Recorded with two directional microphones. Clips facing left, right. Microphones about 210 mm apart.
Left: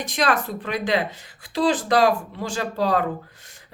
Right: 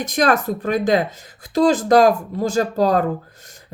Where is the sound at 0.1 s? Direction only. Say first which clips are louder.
Right 5 dB; 45° right (ahead or behind).